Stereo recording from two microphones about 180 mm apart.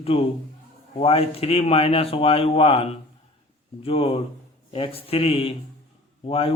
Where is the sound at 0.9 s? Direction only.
35° left (ahead or behind).